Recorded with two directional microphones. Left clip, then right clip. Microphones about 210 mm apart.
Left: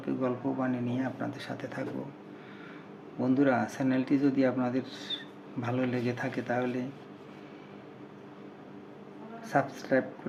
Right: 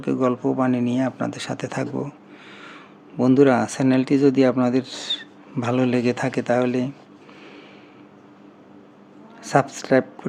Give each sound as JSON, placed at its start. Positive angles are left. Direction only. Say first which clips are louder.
{"t": 0.0, "sound": "speech", "louder": "right 10 dB", "side_deg": -55}
{"t": 3.2, "sound": "speech", "louder": "right 11 dB", "side_deg": -50}
{"t": 9.4, "sound": "speech", "louder": "right 9 dB", "side_deg": -55}